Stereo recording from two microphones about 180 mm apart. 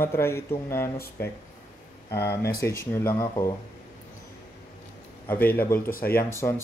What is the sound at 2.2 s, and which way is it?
Speech, 65° left (ahead or behind).